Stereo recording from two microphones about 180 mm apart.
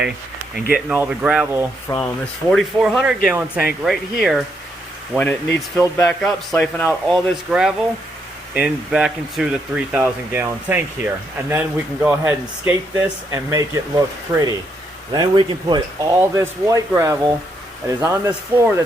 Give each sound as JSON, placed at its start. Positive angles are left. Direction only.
{"t": 0.7, "sound": "speech", "side_deg": -10}
{"t": 1.9, "sound": "speech", "side_deg": 20}
{"t": 2.5, "sound": "speech", "side_deg": 0}